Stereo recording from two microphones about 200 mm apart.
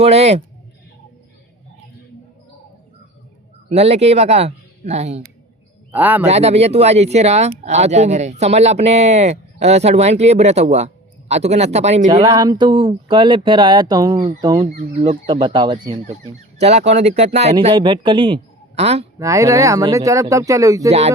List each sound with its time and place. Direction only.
0.0 s speech: 30° right (ahead or behind)
3.7 s speech: 30° right (ahead or behind)
5.9 s speech: 10° right (ahead or behind)
6.2 s speech: 30° right (ahead or behind)
12.2 s speech: 20° right (ahead or behind)
14.9 s speech: 30° right (ahead or behind)
16.6 s speech: 30° right (ahead or behind)
19.2 s speech: 15° right (ahead or behind)